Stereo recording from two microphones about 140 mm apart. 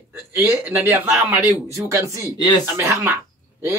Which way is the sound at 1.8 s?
25° right (ahead or behind).